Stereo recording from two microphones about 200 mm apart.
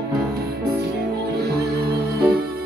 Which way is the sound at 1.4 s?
55° right (ahead or behind).